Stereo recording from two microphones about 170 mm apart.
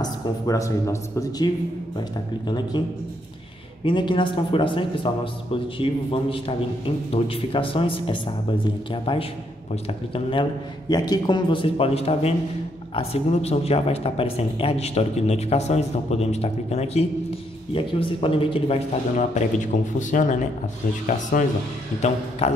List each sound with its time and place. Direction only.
0.0 s speech: 20° left (ahead or behind)
3.8 s speech: 30° left (ahead or behind)
10.9 s speech: 25° left (ahead or behind)
19.1 s speech: 45° left (ahead or behind)
22.4 s speech: 35° left (ahead or behind)